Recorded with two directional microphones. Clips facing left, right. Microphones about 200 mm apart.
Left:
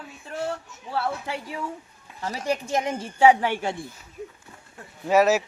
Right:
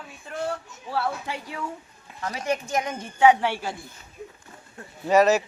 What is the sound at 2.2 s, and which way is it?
Speech, 30° left (ahead or behind).